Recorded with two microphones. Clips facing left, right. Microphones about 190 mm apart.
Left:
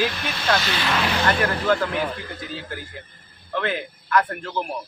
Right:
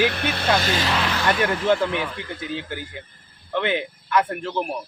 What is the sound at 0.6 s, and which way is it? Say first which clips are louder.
Speech: right 2 dB; 45° right (ahead or behind).